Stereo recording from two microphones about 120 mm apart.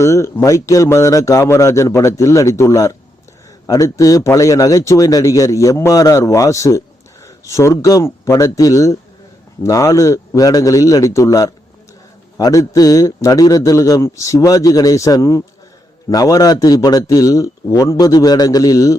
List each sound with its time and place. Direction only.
0.0 s a man's voice: 25° left (ahead or behind)